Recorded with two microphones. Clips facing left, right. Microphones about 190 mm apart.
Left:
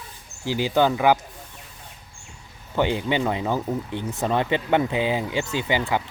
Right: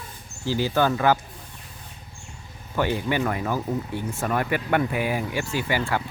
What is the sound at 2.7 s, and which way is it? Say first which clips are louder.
Speech: left 2 dB; 20° left (ahead or behind).